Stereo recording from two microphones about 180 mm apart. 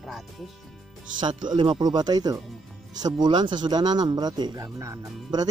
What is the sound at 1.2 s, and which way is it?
Speech, 25° right (ahead or behind).